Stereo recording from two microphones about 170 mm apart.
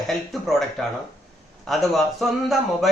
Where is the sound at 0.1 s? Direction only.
Centre (ahead or behind).